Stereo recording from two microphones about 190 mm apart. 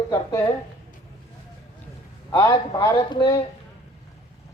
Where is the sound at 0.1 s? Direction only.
15° left (ahead or behind).